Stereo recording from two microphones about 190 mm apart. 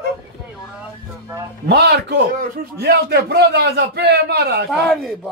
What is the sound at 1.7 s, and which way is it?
A man's voice, 60° right (ahead or behind).